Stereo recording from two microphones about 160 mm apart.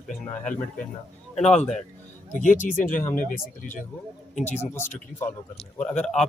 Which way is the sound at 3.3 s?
55° left (ahead or behind).